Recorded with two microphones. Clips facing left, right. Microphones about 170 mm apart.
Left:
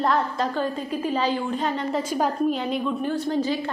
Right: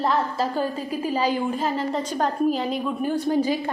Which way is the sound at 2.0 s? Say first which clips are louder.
Even; 10° left (ahead or behind).